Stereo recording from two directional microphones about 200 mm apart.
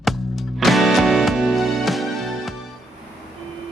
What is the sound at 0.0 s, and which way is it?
Music, centre (ahead or behind).